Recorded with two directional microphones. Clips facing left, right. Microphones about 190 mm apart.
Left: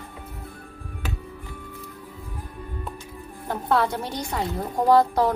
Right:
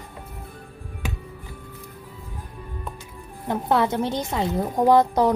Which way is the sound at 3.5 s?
20° right (ahead or behind).